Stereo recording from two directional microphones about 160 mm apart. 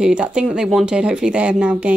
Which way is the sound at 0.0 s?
5° right (ahead or behind).